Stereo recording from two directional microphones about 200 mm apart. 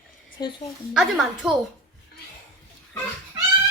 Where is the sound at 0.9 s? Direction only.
Centre (ahead or behind).